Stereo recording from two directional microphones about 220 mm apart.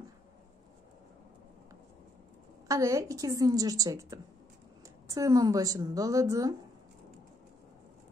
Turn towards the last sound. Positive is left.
turn(degrees=-15)  # may be behind; listen again after turning